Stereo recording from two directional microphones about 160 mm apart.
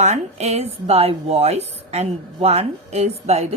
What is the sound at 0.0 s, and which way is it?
A woman's voice, 45° right (ahead or behind).